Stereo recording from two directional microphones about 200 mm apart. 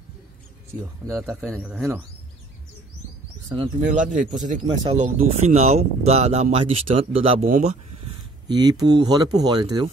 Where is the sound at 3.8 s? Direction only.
40° right (ahead or behind).